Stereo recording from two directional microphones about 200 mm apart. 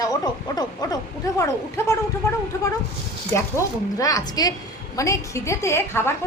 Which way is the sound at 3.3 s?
15° left (ahead or behind).